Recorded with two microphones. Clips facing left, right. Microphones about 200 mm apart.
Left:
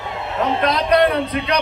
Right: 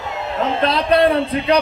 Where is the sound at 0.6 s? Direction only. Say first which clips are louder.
Right 1 dB; 30° right (ahead or behind).